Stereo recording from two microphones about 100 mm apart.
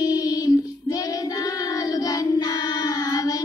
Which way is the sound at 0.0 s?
40° left (ahead or behind).